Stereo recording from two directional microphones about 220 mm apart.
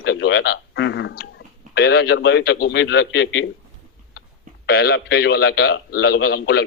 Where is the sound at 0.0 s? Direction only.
50° left (ahead or behind).